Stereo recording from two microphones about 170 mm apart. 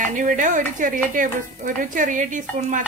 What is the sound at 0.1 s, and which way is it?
Speech, 50° right (ahead or behind).